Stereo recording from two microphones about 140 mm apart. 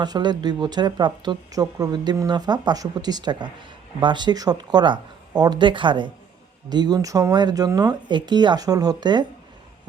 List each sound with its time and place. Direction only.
0.0 s speech: 30° right (ahead or behind)